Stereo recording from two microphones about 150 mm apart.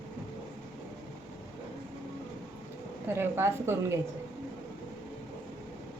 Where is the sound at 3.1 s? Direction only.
15° right (ahead or behind).